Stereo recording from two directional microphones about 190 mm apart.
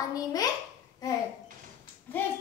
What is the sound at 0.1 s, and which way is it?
Speech, 20° left (ahead or behind).